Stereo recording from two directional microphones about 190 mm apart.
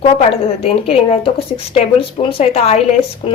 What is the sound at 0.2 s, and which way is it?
A woman's voice, 30° left (ahead or behind).